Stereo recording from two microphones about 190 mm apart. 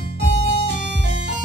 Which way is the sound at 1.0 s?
70° right (ahead or behind).